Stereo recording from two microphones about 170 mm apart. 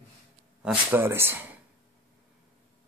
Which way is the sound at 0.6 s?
5° right (ahead or behind).